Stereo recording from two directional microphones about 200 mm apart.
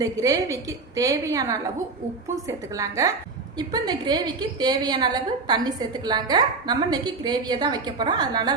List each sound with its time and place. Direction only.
0.0 s a woman's voice: 15° right (ahead or behind)